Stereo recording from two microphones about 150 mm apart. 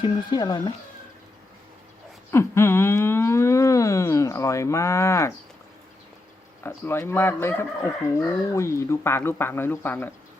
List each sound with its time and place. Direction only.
0.0 s speech: 30° left (ahead or behind)
2.3 s a sound: 15° left (ahead or behind)
6.6 s speech: 15° left (ahead or behind)